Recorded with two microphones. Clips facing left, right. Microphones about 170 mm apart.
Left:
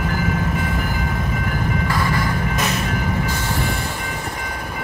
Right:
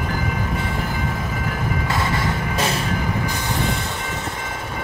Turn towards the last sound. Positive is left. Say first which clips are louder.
# even
turn(degrees=-20)  # may be behind; listen again after turning